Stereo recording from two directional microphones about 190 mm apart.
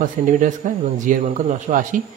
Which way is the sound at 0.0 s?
45° right (ahead or behind).